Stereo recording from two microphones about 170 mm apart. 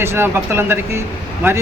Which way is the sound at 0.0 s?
15° right (ahead or behind).